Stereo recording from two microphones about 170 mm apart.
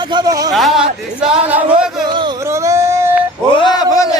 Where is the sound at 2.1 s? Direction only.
20° right (ahead or behind).